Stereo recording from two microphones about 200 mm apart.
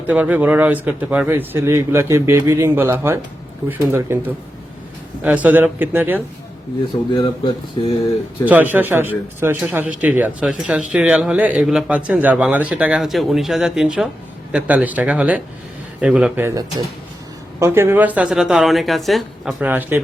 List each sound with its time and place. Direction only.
0.1 s speech: 10° right (ahead or behind)
7.2 s speech: 20° left (ahead or behind)
8.4 s a woman's voice: 10° right (ahead or behind)
19.6 s speech: 10° right (ahead or behind)